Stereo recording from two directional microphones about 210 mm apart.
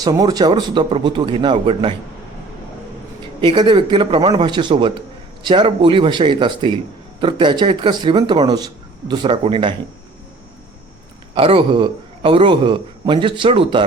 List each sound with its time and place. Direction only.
0.0 s a man's voice: 20° right (ahead or behind)
3.4 s a man's voice: 20° right (ahead or behind)
11.3 s a man's voice: 25° right (ahead or behind)